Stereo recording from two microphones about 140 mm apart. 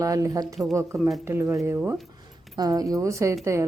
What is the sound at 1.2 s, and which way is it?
Speech, 20° right (ahead or behind).